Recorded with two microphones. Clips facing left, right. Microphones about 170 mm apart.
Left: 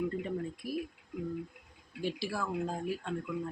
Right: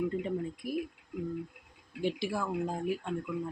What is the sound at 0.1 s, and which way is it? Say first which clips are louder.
Speech: right 2 dB; 20° right (ahead or behind).